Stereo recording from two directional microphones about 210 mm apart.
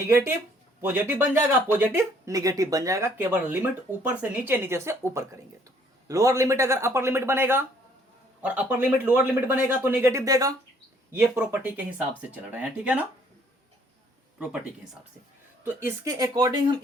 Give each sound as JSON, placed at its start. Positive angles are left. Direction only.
{"t": 0.1, "sound": "speech", "side_deg": -10}
{"t": 14.3, "sound": "speech", "side_deg": -5}
{"t": 15.6, "sound": "speech", "side_deg": -10}